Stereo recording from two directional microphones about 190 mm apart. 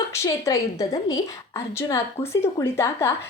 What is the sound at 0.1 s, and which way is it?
A woman's voice, 15° left (ahead or behind).